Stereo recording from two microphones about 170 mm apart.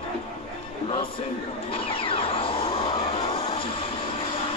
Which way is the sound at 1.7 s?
30° left (ahead or behind).